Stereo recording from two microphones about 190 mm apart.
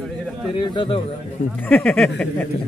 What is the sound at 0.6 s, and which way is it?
Speech, 25° left (ahead or behind).